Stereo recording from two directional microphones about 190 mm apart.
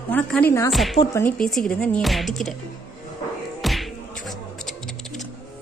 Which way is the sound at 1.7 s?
5° left (ahead or behind).